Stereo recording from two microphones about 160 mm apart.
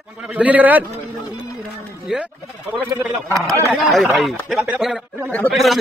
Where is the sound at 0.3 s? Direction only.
10° right (ahead or behind).